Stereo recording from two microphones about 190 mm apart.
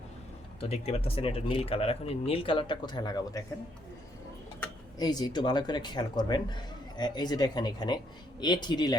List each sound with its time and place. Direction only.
0.6 s speech: 30° left (ahead or behind)
4.9 s speech: 20° left (ahead or behind)